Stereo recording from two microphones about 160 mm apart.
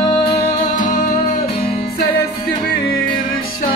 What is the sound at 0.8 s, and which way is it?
Music, 55° left (ahead or behind).